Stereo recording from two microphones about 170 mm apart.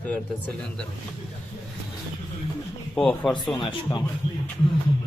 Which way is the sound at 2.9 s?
10° left (ahead or behind).